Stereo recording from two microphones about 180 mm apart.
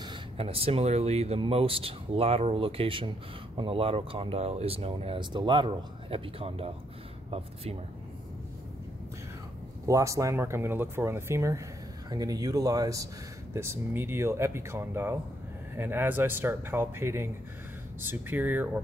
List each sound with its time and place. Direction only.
0.0 s speech: 30° right (ahead or behind)
9.8 s speech: 15° right (ahead or behind)